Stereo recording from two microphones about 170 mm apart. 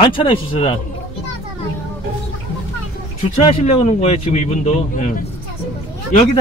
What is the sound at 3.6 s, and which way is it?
Speech, 40° left (ahead or behind).